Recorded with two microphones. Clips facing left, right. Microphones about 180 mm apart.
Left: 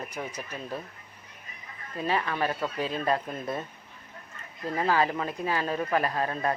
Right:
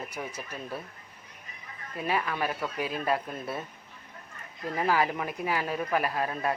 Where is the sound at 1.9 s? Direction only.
10° right (ahead or behind).